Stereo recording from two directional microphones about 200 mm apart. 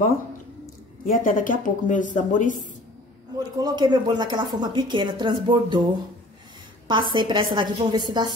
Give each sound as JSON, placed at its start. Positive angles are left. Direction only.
{"t": 1.0, "sound": "speech", "side_deg": 40}
{"t": 3.5, "sound": "a woman's voice", "side_deg": -20}
{"t": 6.9, "sound": "a woman's voice", "side_deg": -25}